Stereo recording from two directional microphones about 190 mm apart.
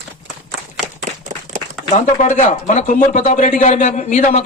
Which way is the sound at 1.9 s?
40° left (ahead or behind).